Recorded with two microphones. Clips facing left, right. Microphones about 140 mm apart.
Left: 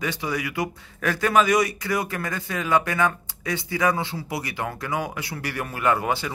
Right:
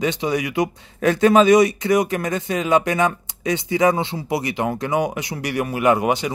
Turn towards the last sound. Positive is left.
turn(degrees=-20)  # may be behind; listen again after turning